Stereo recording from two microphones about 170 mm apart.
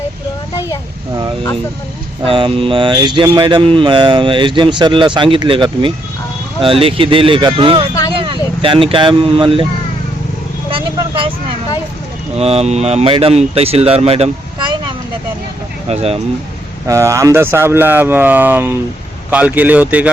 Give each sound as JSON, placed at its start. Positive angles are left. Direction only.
{"t": 2.2, "sound": "speech", "side_deg": -30}
{"t": 10.7, "sound": "vehicle", "side_deg": -30}
{"t": 12.4, "sound": "speech", "side_deg": -40}
{"t": 16.8, "sound": "speech", "side_deg": -15}